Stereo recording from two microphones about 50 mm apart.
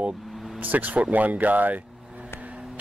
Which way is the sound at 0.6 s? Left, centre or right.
Right.